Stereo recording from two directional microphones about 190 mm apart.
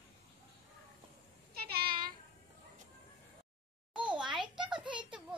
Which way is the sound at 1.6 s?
55° right (ahead or behind).